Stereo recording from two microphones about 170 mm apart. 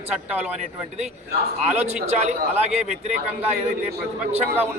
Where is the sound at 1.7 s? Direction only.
40° right (ahead or behind).